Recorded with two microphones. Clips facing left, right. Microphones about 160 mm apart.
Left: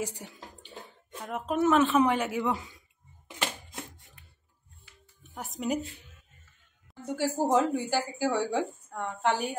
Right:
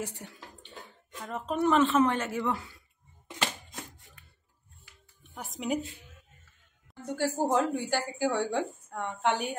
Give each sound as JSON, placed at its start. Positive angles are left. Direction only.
{"t": 0.1, "sound": "a sound", "side_deg": 15}
{"t": 1.2, "sound": "speech", "side_deg": 5}
{"t": 5.3, "sound": "speech", "side_deg": 0}
{"t": 7.1, "sound": "a woman's voice", "side_deg": 5}